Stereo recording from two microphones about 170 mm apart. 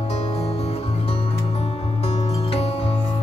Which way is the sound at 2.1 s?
35° left (ahead or behind).